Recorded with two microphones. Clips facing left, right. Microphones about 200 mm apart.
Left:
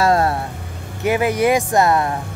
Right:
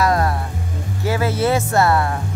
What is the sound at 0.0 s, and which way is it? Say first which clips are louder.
Vehicle: left 2 dB; 30° left (ahead or behind).